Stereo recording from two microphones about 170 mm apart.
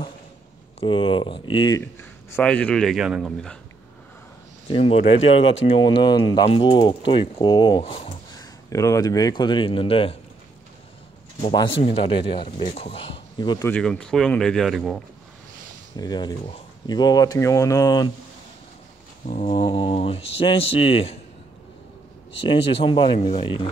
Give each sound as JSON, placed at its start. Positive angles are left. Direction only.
{"t": 0.7, "sound": "speech", "side_deg": 30}
{"t": 1.8, "sound": "speech", "side_deg": 15}
{"t": 4.6, "sound": "speech", "side_deg": 35}
{"t": 8.3, "sound": "speech", "side_deg": 20}
{"t": 11.8, "sound": "speech", "side_deg": 35}
{"t": 13.7, "sound": "speech", "side_deg": 5}
{"t": 16.0, "sound": "speech", "side_deg": 25}
{"t": 19.4, "sound": "speech", "side_deg": 30}
{"t": 22.8, "sound": "speech", "side_deg": 30}